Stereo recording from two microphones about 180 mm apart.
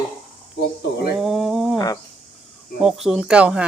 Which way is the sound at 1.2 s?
Centre (ahead or behind).